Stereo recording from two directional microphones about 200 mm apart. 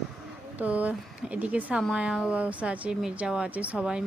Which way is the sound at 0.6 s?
5° right (ahead or behind).